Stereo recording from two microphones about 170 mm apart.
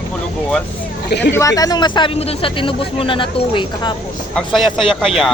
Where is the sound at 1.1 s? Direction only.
90° left.